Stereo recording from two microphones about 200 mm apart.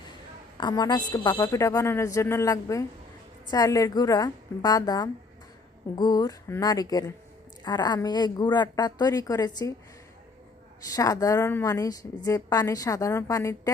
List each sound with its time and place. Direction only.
0.6 s a woman's voice: 20° left (ahead or behind)
10.9 s a woman's voice: 15° left (ahead or behind)